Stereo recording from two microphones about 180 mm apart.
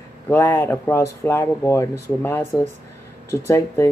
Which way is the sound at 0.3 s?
15° left (ahead or behind).